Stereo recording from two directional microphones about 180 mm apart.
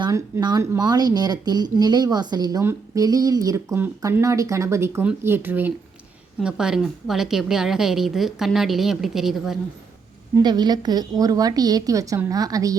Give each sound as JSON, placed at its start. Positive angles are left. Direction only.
{"t": 0.0, "sound": "a woman's voice", "side_deg": -20}
{"t": 10.3, "sound": "speech", "side_deg": -25}